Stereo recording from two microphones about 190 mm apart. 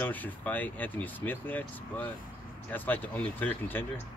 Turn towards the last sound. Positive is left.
turn(degrees=10)  # may be behind; listen again after turning